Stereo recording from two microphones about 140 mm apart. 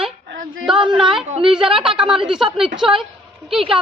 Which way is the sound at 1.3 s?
40° right (ahead or behind).